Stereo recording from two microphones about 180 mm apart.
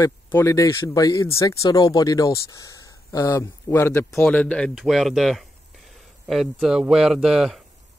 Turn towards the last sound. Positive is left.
turn(degrees=0)  # may be behind; listen again after turning